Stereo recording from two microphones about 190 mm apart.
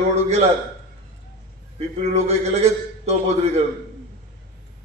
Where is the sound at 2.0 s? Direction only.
35° right (ahead or behind).